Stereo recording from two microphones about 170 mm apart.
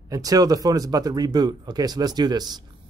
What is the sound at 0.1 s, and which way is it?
Speech, 20° right (ahead or behind).